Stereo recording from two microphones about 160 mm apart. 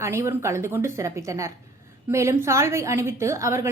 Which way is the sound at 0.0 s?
15° right (ahead or behind).